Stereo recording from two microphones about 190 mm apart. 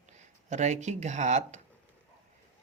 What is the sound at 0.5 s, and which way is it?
Speech, 40° right (ahead or behind).